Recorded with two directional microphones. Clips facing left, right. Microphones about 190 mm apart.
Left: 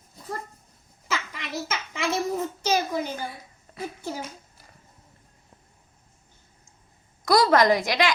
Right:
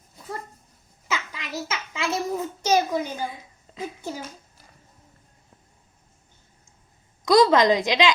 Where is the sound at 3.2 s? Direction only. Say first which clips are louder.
Right 3 dB; 15° right (ahead or behind).